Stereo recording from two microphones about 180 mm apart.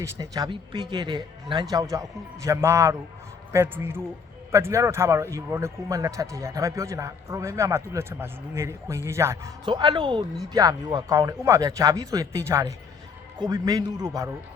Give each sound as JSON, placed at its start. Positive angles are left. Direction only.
{"t": 0.0, "sound": "a man's voice", "side_deg": -20}